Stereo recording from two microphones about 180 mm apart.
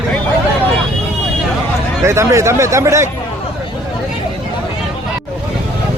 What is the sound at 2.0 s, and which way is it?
Speech, 15° right (ahead or behind).